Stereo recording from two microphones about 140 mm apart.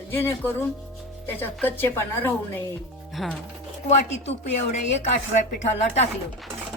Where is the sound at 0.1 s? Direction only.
15° left (ahead or behind).